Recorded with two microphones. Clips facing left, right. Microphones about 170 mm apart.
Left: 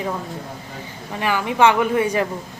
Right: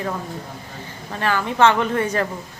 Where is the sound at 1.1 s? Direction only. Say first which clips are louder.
Even; 15° left (ahead or behind).